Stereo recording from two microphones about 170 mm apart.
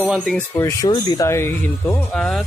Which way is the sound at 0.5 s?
15° left (ahead or behind).